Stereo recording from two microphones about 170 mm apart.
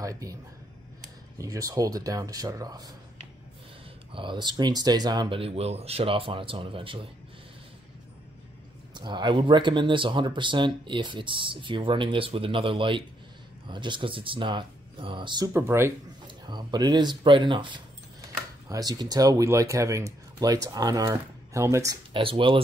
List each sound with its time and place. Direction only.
0.0 s speech: 20° right (ahead or behind)
1.4 s speech: 20° right (ahead or behind)
4.1 s speech: 30° right (ahead or behind)
8.9 s speech: 25° right (ahead or behind)
16.3 s speech: 25° right (ahead or behind)
22.1 s speech: 30° right (ahead or behind)